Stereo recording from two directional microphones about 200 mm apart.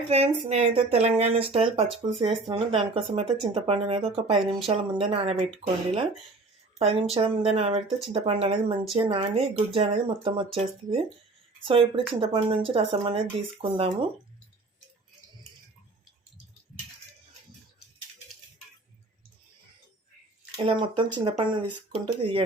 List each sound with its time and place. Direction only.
0.1 s speech: 30° right (ahead or behind)
6.7 s speech: 30° right (ahead or behind)
20.6 s speech: 25° right (ahead or behind)